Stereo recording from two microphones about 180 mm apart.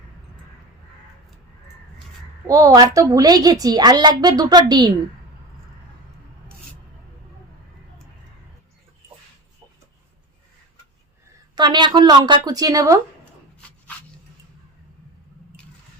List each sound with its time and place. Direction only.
2.5 s a woman's voice: 20° right (ahead or behind)
11.5 s a woman's voice: 25° right (ahead or behind)
13.6 s dog: 5° left (ahead or behind)